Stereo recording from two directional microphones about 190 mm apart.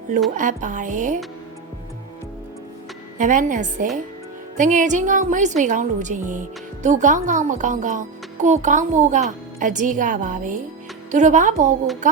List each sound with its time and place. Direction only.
0.3 s speech: 40° right (ahead or behind)
3.2 s a woman's voice: 40° right (ahead or behind)